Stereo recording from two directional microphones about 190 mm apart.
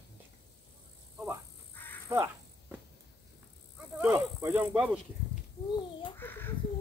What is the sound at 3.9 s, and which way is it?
Snake, 15° right (ahead or behind).